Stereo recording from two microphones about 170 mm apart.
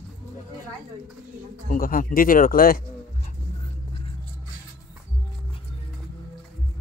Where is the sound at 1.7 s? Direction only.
55° left (ahead or behind).